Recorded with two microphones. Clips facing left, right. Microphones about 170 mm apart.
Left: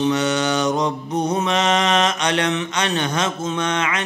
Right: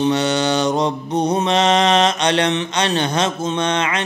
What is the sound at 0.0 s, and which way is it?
Mantra, 30° right (ahead or behind).